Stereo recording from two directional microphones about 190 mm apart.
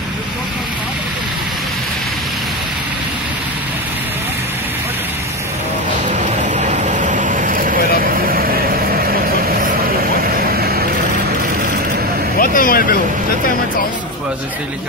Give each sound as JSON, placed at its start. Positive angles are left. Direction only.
{"t": 6.0, "sound": "vehicle", "side_deg": -40}
{"t": 10.5, "sound": "vehicle", "side_deg": -55}
{"t": 12.4, "sound": "vehicle", "side_deg": 50}